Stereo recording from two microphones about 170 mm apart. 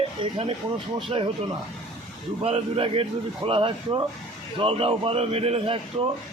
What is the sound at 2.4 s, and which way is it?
Speech, 35° right (ahead or behind).